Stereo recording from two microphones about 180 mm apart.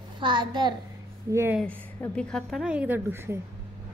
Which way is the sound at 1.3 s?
10° right (ahead or behind).